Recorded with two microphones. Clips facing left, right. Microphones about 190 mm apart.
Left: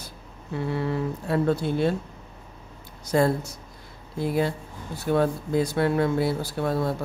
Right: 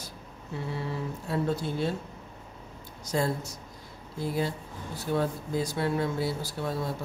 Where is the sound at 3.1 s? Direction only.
60° left (ahead or behind).